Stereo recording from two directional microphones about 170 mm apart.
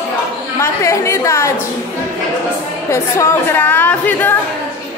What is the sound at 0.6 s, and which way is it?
Speech, 15° left (ahead or behind).